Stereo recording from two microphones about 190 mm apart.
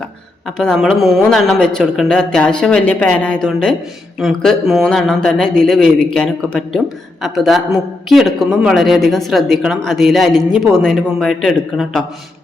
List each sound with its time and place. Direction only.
0.4 s speech: 5° left (ahead or behind)